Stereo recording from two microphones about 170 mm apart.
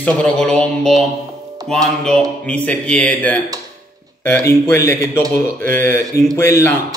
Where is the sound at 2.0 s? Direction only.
5° left (ahead or behind).